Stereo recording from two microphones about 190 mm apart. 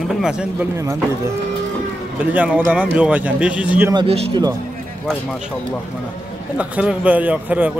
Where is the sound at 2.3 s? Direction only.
10° right (ahead or behind).